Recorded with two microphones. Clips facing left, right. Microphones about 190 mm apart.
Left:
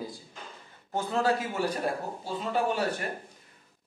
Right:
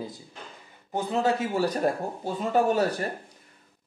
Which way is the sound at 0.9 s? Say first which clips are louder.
Right 2 dB; 20° right (ahead or behind).